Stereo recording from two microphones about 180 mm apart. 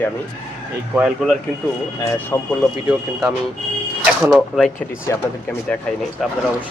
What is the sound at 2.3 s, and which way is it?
Speech, 10° left (ahead or behind).